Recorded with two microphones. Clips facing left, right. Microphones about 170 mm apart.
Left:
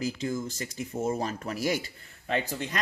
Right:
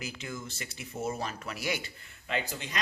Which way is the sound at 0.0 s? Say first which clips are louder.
Left 9 dB; 40° left (ahead or behind).